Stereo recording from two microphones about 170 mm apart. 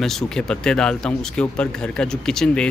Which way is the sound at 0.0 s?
5° left (ahead or behind).